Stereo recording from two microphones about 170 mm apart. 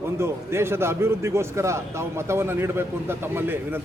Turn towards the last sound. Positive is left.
turn(degrees=-10)  # may be behind; listen again after turning